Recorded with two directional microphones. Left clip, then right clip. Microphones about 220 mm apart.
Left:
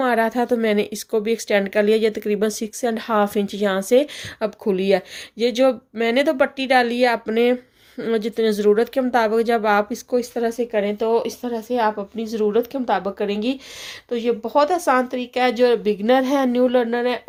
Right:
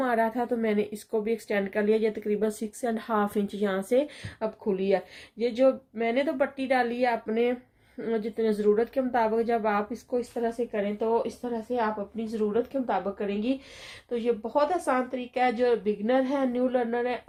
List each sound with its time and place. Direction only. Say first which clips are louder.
0.0 s speech: left 7 dB; 40° left (ahead or behind)